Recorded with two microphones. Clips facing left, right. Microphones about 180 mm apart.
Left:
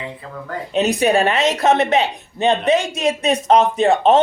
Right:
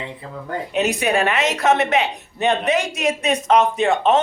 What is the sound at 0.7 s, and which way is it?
Speech, 35° left (ahead or behind).